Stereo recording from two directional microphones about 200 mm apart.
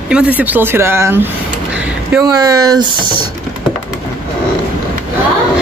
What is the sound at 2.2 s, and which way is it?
Speech, 20° right (ahead or behind).